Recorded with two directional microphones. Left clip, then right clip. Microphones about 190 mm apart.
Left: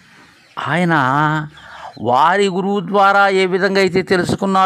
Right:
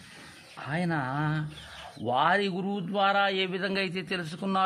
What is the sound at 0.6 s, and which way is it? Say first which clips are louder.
A man's voice: left 16 dB; 40° left (ahead or behind).